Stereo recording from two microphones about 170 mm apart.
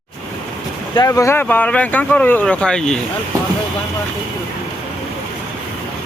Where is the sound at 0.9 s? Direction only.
20° left (ahead or behind).